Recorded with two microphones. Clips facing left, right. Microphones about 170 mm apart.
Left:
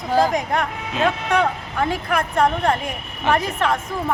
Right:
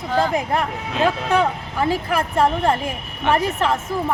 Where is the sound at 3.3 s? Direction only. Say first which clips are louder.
Right 1 dB; 30° right (ahead or behind).